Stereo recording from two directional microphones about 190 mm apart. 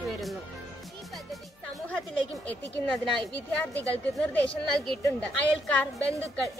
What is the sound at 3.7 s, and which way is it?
A woman's voice, 10° left (ahead or behind).